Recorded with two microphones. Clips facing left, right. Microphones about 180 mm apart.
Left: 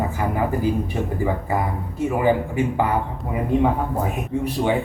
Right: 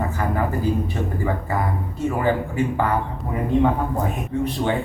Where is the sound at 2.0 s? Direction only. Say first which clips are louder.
Left 2 dB; 15° left (ahead or behind).